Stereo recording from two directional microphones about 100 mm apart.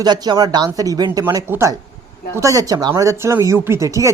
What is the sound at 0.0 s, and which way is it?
Speech, 45° right (ahead or behind).